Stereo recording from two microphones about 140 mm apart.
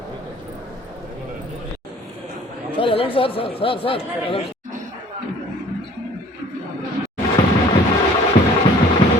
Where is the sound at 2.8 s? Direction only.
40° left (ahead or behind).